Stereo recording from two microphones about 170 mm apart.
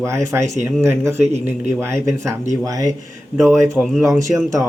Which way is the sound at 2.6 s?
20° right (ahead or behind).